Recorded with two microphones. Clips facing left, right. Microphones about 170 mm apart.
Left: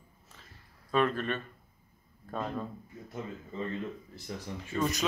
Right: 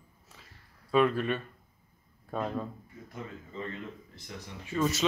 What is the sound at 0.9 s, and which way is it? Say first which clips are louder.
Speech: right 3 dB; 10° right (ahead or behind).